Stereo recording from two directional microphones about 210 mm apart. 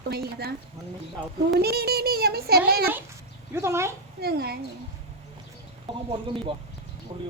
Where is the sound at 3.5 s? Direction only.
10° right (ahead or behind).